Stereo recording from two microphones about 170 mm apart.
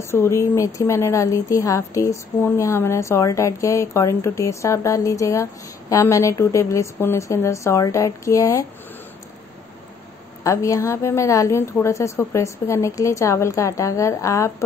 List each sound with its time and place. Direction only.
0.0 s a woman's voice: 15° left (ahead or behind)
10.4 s a woman's voice: 20° left (ahead or behind)